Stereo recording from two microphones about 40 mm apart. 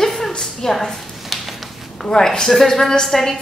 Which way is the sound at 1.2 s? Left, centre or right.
Centre.